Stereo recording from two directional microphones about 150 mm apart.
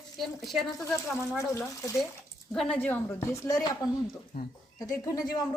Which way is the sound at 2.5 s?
5° left (ahead or behind).